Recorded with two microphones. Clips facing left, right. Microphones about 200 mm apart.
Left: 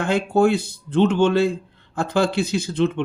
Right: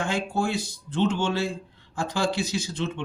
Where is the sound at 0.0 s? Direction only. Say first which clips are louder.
Left 9 dB; 60° left (ahead or behind).